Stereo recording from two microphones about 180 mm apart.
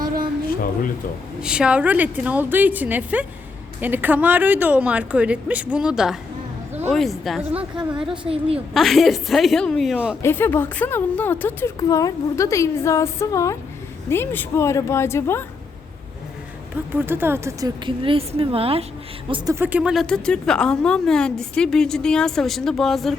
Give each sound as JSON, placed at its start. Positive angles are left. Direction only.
{"t": 0.4, "sound": "speech", "side_deg": 50}
{"t": 1.4, "sound": "a woman's voice", "side_deg": -5}
{"t": 10.2, "sound": "a woman's voice", "side_deg": 10}
{"t": 16.9, "sound": "speech", "side_deg": -10}
{"t": 17.8, "sound": "a woman's voice", "side_deg": -30}
{"t": 19.5, "sound": "a woman's voice", "side_deg": -10}